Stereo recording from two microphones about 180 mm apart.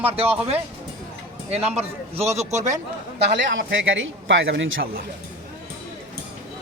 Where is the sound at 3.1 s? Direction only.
75° right (ahead or behind); by 4.8 s 90° right.